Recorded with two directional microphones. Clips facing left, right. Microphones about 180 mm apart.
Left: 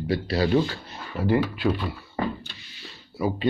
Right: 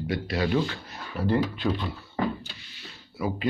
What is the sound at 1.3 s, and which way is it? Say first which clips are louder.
Speech: left 3 dB; 10° left (ahead or behind).